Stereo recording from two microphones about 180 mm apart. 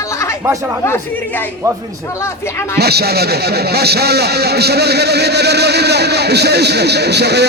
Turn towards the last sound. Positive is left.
turn(degrees=-65)  # may be behind; listen again after turning